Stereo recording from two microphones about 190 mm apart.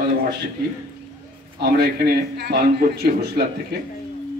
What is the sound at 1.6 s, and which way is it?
A man's voice, 55° right (ahead or behind).